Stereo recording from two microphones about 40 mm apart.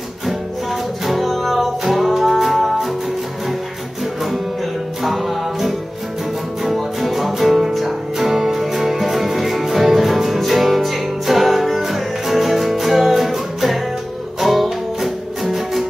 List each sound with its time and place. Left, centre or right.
0.3 s music: centre
4.0 s music: centre